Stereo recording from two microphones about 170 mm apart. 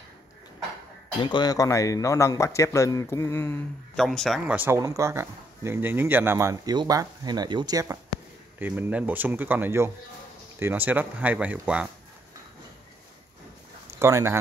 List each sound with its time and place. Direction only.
1.2 s speech: 25° left (ahead or behind)
3.9 s speech: centre (ahead or behind)
4.6 s speech: 15° right (ahead or behind)
13.9 s speech: 15° right (ahead or behind)